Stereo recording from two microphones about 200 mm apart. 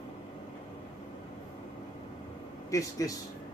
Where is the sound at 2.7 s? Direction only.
15° left (ahead or behind).